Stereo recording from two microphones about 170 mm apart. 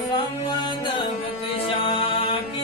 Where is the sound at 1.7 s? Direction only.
30° left (ahead or behind).